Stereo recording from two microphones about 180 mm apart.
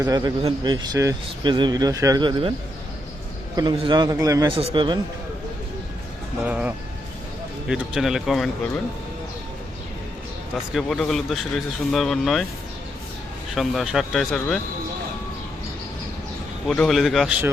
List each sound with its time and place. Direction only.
0.0 s speech: 20° right (ahead or behind)
3.5 s speech: 25° right (ahead or behind)
6.4 s speech: 5° right (ahead or behind)
10.7 s speech: centre (ahead or behind)
13.5 s speech: centre (ahead or behind)
16.6 s speech: centre (ahead or behind)